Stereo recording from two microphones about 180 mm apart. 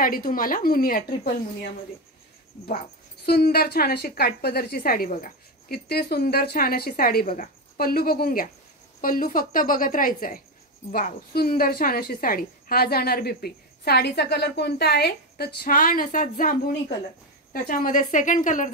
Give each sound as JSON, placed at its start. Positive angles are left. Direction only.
{"t": 0.0, "sound": "a woman's voice", "side_deg": 50}
{"t": 3.3, "sound": "a woman's voice", "side_deg": 60}